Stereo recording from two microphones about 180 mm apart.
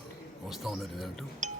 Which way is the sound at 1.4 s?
45° right (ahead or behind).